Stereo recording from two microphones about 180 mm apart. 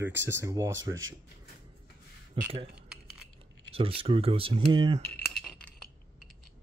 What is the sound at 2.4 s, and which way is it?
Speech, 30° right (ahead or behind).